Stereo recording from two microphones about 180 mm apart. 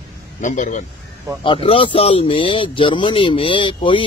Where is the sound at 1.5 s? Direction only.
30° left (ahead or behind).